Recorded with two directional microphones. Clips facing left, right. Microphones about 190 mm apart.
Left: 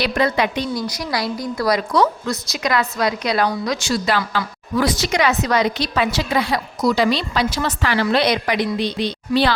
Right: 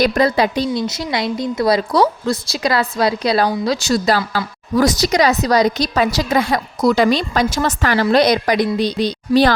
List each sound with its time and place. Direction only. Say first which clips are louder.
0.0 s a woman's voice: right 4 dB; 40° right (ahead or behind)
0.7 s a woman's voice: right 3 dB; 25° right (ahead or behind); by 9.5 s 40° right (ahead or behind)